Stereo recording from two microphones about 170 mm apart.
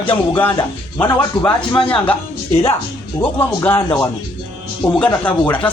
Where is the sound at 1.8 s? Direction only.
5° left (ahead or behind).